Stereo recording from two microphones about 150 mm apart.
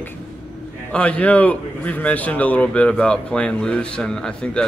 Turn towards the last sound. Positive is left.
turn(degrees=5)  # may be behind; listen again after turning